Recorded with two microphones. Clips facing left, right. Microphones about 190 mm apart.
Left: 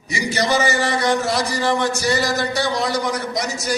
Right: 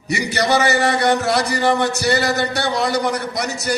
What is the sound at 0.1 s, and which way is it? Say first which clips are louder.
A man's voice: right 2 dB; 65° right (ahead or behind).